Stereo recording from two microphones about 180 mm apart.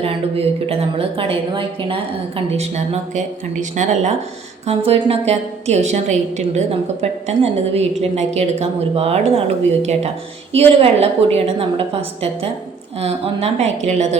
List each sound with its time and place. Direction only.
0.0 s a woman's voice: 30° right (ahead or behind)
10.5 s a woman's voice: 35° right (ahead or behind)